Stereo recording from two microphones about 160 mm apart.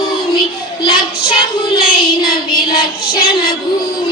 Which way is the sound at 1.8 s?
70° left (ahead or behind).